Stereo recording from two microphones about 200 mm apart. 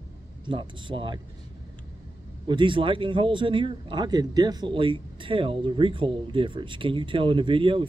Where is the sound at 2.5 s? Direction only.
25° right (ahead or behind).